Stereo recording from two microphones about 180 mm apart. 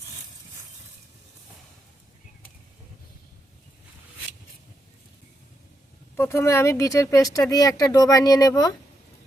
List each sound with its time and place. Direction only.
6.1 s speech: 15° left (ahead or behind)